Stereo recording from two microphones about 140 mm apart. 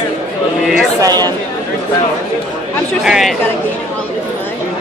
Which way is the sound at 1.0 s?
30° right (ahead or behind).